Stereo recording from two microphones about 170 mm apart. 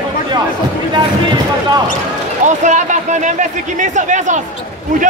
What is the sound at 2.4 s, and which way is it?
Speech, 45° right (ahead or behind).